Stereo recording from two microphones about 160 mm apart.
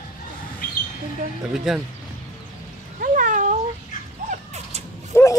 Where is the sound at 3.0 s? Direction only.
55° right (ahead or behind).